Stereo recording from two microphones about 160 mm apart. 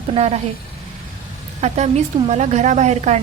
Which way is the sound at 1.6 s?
45° right (ahead or behind).